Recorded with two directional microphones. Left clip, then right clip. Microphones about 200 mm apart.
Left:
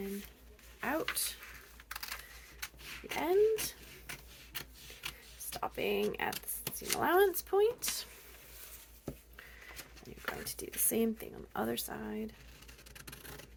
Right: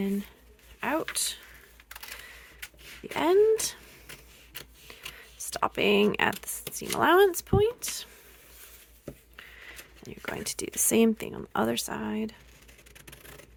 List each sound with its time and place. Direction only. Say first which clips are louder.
0.8 s a sound: right 6 dB; 35° right (ahead or behind)
1.1 s speech: right 7 dB; 40° right (ahead or behind)
2.6 s a sound: left 1 dB; 5° right (ahead or behind)
3.2 s speech: right 8 dB; 60° right (ahead or behind)
5.5 s speech: right 10 dB; 65° right (ahead or behind)
7.0 s speech: right 8 dB; 50° right (ahead or behind); by 7.9 s 30° right (ahead or behind)
10.0 s speech: right 6 dB; 50° right (ahead or behind)